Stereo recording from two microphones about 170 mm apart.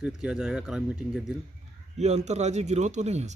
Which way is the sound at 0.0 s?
5° right (ahead or behind).